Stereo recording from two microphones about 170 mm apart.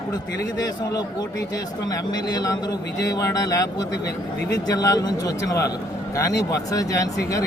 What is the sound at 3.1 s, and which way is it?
A man's voice, 20° left (ahead or behind).